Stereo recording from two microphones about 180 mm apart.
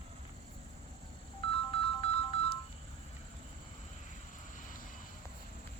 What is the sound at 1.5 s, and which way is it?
Music, 30° left (ahead or behind).